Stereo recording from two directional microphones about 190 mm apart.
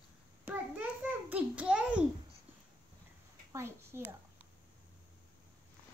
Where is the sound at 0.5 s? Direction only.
10° right (ahead or behind).